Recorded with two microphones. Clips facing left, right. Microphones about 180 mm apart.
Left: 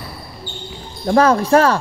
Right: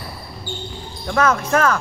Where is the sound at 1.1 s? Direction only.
35° left (ahead or behind).